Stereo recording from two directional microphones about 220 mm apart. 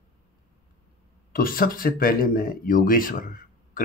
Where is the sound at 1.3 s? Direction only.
40° left (ahead or behind).